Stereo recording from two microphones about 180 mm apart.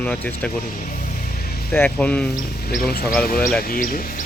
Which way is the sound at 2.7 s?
55° left (ahead or behind).